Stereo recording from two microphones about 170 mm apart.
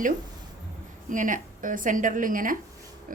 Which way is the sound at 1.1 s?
50° right (ahead or behind).